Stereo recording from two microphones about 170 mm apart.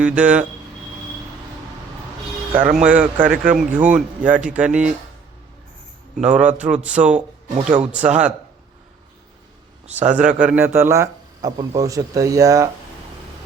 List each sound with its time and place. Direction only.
0.0 s speech: 5° right (ahead or behind)
2.6 s speech: 10° right (ahead or behind)
6.2 s speech: 5° right (ahead or behind)
7.5 s speech: 40° right (ahead or behind)
7.9 s speech: 5° right (ahead or behind)
9.8 s speech: 40° right (ahead or behind)
10.2 s a man's voice: 5° right (ahead or behind)